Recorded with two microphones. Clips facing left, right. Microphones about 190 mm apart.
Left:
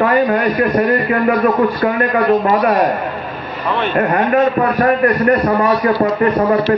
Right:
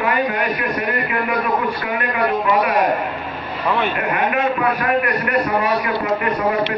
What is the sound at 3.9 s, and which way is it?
A man's voice, 40° left (ahead or behind).